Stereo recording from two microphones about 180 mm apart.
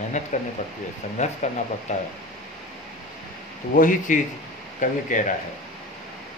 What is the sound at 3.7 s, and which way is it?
Speech, 50° left (ahead or behind).